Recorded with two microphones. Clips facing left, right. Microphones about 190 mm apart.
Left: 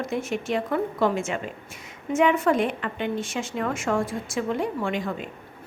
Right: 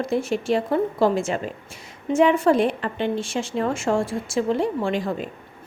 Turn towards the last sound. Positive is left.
turn(degrees=-35)  # may be behind; listen again after turning